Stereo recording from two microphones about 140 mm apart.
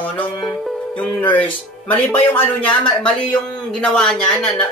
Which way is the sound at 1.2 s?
10° left (ahead or behind).